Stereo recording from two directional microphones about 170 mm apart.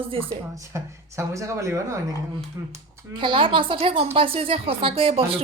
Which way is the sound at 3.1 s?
30° right (ahead or behind).